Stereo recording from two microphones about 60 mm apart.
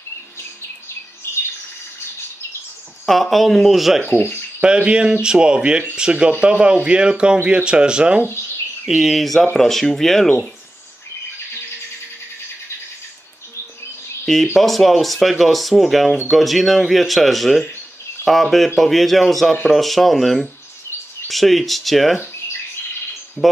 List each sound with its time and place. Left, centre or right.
3.1 s speech: centre
4.0 s speech: centre
14.2 s speech: centre
23.4 s speech: centre